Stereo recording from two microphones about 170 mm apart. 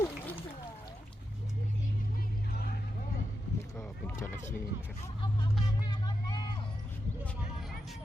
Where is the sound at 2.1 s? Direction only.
60° left (ahead or behind).